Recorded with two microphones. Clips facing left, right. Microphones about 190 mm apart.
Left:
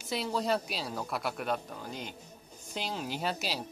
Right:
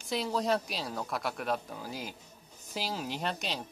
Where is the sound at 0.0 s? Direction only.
Centre (ahead or behind).